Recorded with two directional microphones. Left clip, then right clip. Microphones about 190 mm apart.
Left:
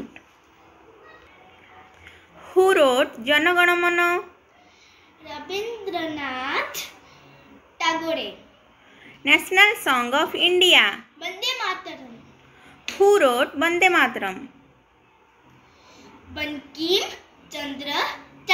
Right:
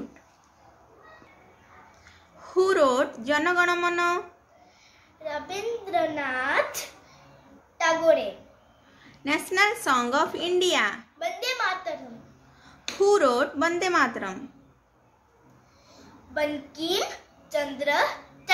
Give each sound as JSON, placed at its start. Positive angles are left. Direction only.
{"t": 2.5, "sound": "speech", "side_deg": 0}
{"t": 5.2, "sound": "a child's voice", "side_deg": -20}
{"t": 9.2, "sound": "speech", "side_deg": 0}
{"t": 11.1, "sound": "a sound", "side_deg": -20}
{"t": 13.2, "sound": "speech", "side_deg": -5}
{"t": 16.3, "sound": "a woman's voice", "side_deg": -15}